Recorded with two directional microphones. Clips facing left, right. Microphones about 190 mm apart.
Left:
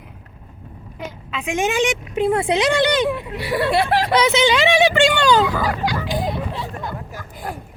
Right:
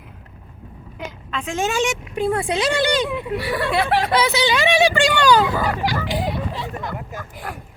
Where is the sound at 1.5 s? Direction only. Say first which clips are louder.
Left 2 dB; 15° left (ahead or behind).